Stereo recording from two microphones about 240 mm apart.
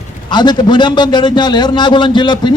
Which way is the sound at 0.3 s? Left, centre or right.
Centre.